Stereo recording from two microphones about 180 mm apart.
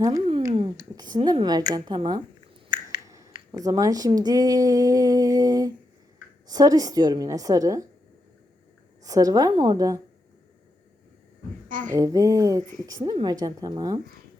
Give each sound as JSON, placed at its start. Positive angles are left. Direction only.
{"t": 0.8, "sound": "a woman's voice", "side_deg": -20}
{"t": 9.0, "sound": "a woman's voice", "side_deg": -20}
{"t": 11.7, "sound": "a sound", "side_deg": -45}
{"t": 11.9, "sound": "a woman's voice", "side_deg": -20}